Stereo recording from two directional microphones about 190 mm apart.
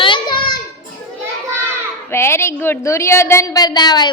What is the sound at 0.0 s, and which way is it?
Children playing, 25° left (ahead or behind).